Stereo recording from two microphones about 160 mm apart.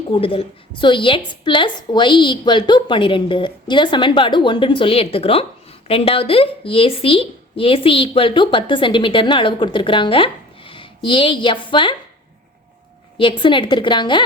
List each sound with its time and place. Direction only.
0.1 s a woman's voice: 35° left (ahead or behind)
13.1 s a woman's voice: 30° left (ahead or behind)